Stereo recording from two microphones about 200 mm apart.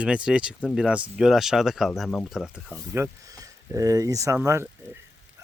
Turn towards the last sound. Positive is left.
turn(degrees=-10)  # may be behind; listen again after turning